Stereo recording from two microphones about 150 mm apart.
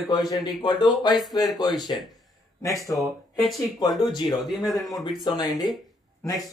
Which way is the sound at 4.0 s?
30° left (ahead or behind).